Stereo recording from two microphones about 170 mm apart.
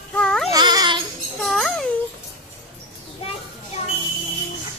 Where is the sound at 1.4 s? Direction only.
Centre (ahead or behind).